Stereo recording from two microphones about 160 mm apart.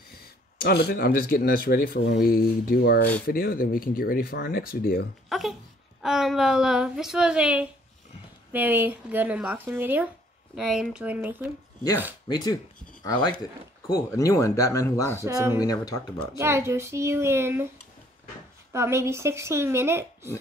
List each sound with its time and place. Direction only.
0.6 s speech: 85° left; by 5.0 s 65° left (ahead or behind)
5.3 s wail: centre (ahead or behind)
6.0 s a woman's voice: centre (ahead or behind)
10.5 s a woman's voice: centre (ahead or behind)
12.3 s speech: 25° left (ahead or behind)
15.2 s speech: 15° right (ahead or behind)
15.5 s speech: 25° left (ahead or behind)
16.3 s speech: 15° right (ahead or behind)
18.7 s speech: 15° right (ahead or behind)